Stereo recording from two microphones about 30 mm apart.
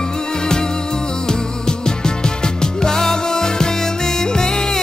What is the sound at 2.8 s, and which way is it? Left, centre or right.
Music, left.